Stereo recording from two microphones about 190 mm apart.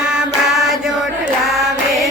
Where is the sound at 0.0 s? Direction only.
5° right (ahead or behind).